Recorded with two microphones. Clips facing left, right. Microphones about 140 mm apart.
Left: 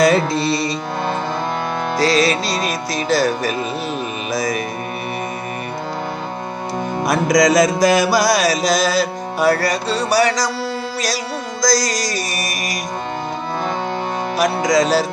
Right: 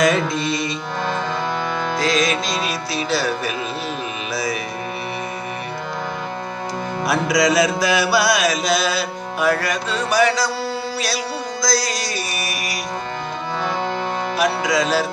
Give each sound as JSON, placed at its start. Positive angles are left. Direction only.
{"t": 0.0, "sound": "music", "side_deg": 35}
{"t": 2.0, "sound": "music", "side_deg": 35}
{"t": 7.1, "sound": "music", "side_deg": 45}
{"t": 11.6, "sound": "music", "side_deg": 40}
{"t": 14.3, "sound": "music", "side_deg": 40}